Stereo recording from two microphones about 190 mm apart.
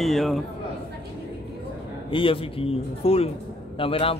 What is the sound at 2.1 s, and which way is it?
A man's voice, 25° left (ahead or behind).